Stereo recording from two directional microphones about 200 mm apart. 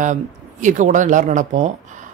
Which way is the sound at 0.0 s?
40° right (ahead or behind).